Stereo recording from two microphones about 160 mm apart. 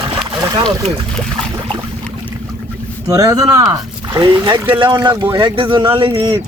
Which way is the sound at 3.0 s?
20° right (ahead or behind).